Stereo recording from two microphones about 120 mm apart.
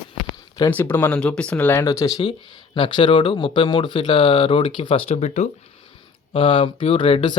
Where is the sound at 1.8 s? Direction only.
30° left (ahead or behind).